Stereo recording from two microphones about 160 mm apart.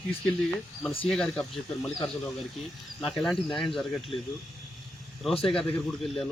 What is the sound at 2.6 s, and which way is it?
Speech, centre (ahead or behind).